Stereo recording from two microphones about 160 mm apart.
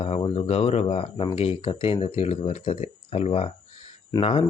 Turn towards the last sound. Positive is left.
turn(degrees=35)  # may be behind; listen again after turning